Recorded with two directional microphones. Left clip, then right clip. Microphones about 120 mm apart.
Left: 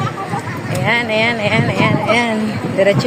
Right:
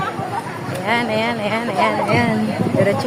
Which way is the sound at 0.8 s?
15° left (ahead or behind).